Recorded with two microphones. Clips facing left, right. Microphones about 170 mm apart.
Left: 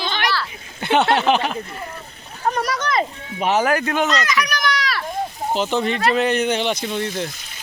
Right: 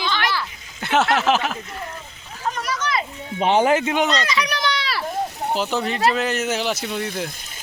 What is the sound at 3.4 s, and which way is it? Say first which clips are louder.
Speech: right 1 dB; 30° right (ahead or behind).